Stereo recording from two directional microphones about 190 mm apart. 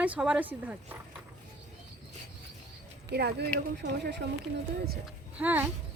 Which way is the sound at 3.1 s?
60° right (ahead or behind).